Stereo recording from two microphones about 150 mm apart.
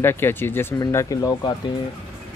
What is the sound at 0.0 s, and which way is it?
Speech, 15° left (ahead or behind).